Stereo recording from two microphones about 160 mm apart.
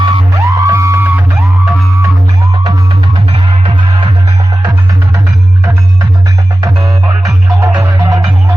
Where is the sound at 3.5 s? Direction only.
35° right (ahead or behind).